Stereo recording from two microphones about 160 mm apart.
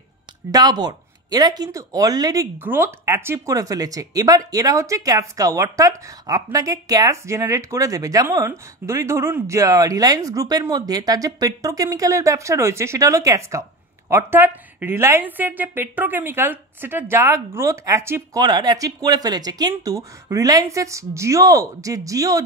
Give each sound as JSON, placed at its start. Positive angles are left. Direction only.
{"t": 0.5, "sound": "speech", "side_deg": -25}